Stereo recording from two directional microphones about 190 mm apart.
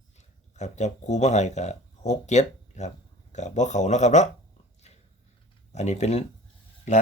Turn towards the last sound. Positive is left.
turn(degrees=40)  # may be behind; listen again after turning